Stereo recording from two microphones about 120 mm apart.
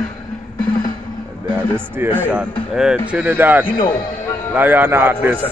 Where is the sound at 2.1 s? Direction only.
15° right (ahead or behind).